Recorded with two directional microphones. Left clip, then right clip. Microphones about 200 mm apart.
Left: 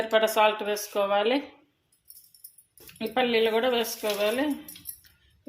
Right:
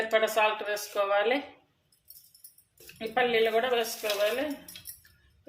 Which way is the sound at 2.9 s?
35° left (ahead or behind).